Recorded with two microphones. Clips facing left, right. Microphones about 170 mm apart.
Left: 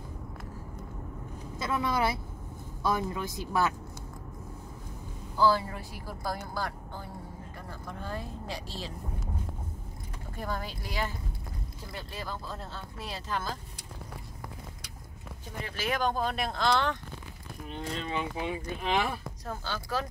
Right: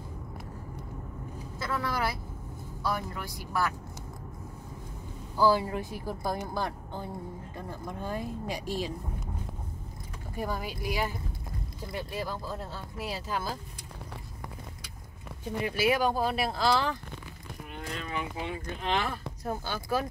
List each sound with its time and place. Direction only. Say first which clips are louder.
1.6 s speech: left 2 dB; 20° left (ahead or behind)
5.4 s speech: right 1 dB; 15° right (ahead or behind)
10.3 s speech: right 2 dB; 10° right (ahead or behind)
15.6 s speech: right 4 dB; 10° right (ahead or behind)
17.6 s speech: left 3 dB; 25° left (ahead or behind); by 19.0 s 10° left (ahead or behind)
19.4 s speech: right 4 dB; 15° right (ahead or behind)